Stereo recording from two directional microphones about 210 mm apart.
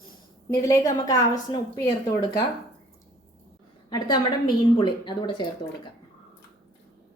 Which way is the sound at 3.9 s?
20° left (ahead or behind).